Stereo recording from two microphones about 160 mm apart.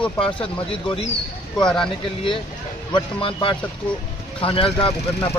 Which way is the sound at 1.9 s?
30° left (ahead or behind).